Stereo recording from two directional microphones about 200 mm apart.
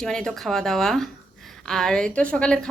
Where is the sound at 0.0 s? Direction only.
Centre (ahead or behind).